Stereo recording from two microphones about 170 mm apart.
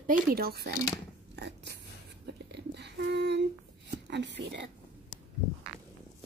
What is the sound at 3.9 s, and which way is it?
Speech, 90° right.